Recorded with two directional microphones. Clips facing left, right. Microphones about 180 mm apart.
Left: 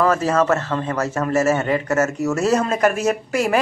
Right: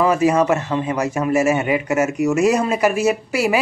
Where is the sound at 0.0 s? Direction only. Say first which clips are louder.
Right 2 dB; 15° right (ahead or behind).